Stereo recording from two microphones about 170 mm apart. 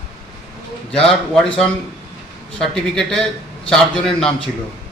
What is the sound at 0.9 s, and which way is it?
A man's voice, 5° left (ahead or behind).